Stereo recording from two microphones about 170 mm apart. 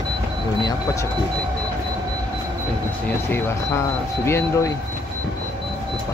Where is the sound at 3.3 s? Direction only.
15° left (ahead or behind).